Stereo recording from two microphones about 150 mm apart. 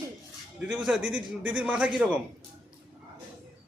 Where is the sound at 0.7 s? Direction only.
5° right (ahead or behind).